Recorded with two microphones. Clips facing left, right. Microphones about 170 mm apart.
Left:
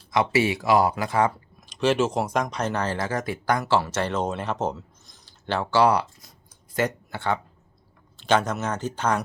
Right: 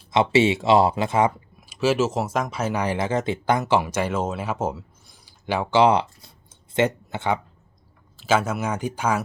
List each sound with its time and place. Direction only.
0.1 s speech: 25° right (ahead or behind)
1.6 s speech: 5° right (ahead or behind)
8.1 s speech: 5° right (ahead or behind)